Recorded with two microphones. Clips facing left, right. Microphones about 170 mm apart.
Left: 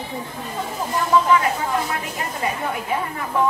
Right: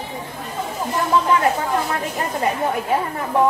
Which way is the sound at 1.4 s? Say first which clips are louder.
Right 3 dB; 40° right (ahead or behind).